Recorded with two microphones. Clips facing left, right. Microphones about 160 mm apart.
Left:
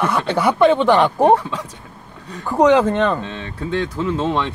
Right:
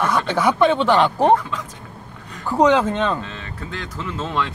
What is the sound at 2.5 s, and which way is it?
Speech, 5° left (ahead or behind).